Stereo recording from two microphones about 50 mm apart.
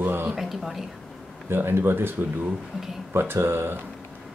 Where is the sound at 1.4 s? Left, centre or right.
Right.